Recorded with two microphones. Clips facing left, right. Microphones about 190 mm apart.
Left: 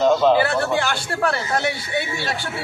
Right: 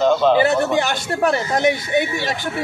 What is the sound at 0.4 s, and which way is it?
Speech, 20° right (ahead or behind).